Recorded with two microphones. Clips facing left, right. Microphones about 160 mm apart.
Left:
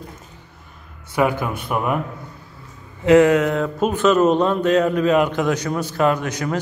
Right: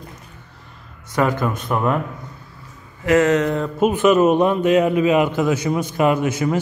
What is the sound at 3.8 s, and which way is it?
A man's voice, 10° right (ahead or behind).